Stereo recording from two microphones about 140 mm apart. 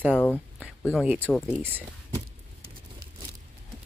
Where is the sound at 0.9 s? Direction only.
Centre (ahead or behind).